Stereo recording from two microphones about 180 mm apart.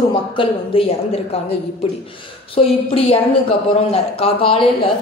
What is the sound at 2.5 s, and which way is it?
A woman's voice, 30° left (ahead or behind).